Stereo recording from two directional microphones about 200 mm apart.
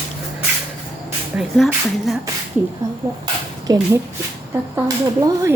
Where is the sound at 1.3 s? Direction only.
Centre (ahead or behind).